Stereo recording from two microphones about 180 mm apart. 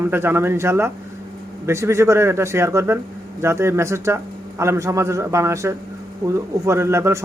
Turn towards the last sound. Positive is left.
turn(degrees=-15)  # may be behind; listen again after turning